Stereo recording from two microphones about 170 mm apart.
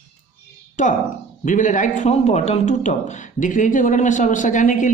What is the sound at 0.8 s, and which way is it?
A man's voice, 45° left (ahead or behind).